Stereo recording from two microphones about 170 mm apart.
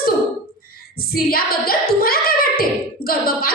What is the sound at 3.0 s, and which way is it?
A capella, 60° left (ahead or behind).